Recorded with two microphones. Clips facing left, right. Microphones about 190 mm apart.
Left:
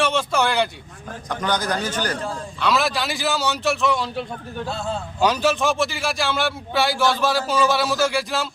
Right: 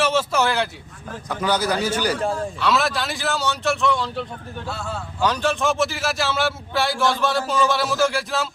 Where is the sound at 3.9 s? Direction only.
10° left (ahead or behind).